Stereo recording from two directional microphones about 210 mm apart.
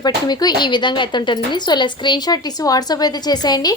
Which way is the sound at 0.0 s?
20° left (ahead or behind).